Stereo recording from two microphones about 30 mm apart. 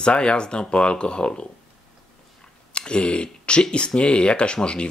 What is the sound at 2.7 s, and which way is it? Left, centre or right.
Speech, left.